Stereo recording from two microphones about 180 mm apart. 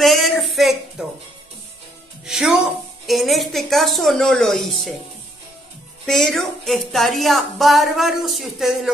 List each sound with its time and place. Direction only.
0.0 s a sound: centre (ahead or behind)
2.2 s a woman's voice: centre (ahead or behind)
6.0 s speech: centre (ahead or behind)